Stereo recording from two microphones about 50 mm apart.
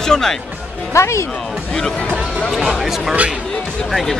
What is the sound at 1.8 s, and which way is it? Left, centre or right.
Speech, centre.